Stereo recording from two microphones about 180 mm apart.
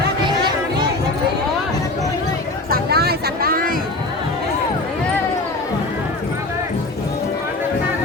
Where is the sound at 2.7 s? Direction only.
60° right (ahead or behind).